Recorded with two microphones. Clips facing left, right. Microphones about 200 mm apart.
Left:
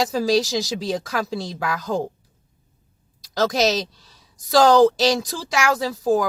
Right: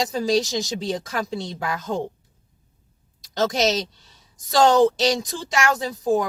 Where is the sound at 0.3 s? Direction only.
Centre (ahead or behind).